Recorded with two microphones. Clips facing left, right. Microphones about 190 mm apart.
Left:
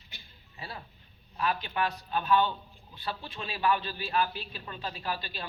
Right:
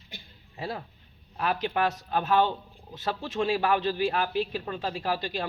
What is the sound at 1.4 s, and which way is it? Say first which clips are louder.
A man's voice: right 4 dB; 65° right (ahead or behind).